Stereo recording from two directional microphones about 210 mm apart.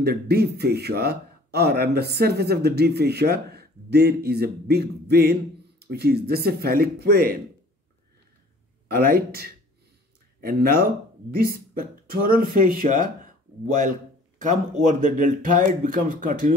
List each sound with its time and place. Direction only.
0.0 s speech: 50° right (ahead or behind)
8.8 s speech: 45° right (ahead or behind)
14.4 s speech: 35° right (ahead or behind)